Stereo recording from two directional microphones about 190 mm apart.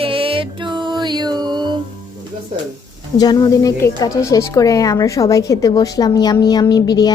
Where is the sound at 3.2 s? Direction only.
20° left (ahead or behind).